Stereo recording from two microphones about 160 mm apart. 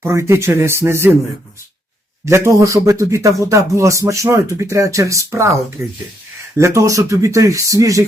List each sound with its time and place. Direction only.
0.0 s speech: 15° right (ahead or behind)
2.2 s speech: 15° right (ahead or behind)